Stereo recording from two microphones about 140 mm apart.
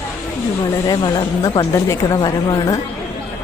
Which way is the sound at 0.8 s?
30° left (ahead or behind).